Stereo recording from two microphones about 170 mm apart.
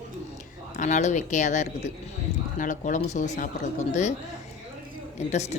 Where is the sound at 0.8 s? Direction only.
45° left (ahead or behind).